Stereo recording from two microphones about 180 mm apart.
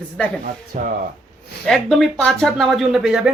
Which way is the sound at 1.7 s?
Centre (ahead or behind).